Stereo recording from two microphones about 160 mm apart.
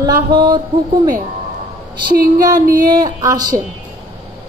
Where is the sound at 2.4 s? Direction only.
25° right (ahead or behind).